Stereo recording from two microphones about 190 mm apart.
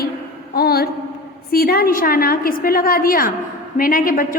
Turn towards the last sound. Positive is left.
turn(degrees=45)  # may be behind; listen again after turning